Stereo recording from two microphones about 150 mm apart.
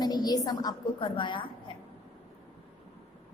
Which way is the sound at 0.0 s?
25° left (ahead or behind).